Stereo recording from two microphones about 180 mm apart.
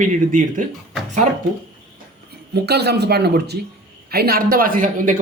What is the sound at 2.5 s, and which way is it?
A man's voice, 65° right (ahead or behind).